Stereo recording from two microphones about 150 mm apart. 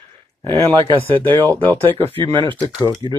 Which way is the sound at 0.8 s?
35° right (ahead or behind).